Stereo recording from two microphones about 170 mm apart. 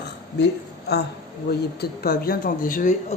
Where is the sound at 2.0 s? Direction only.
60° left (ahead or behind).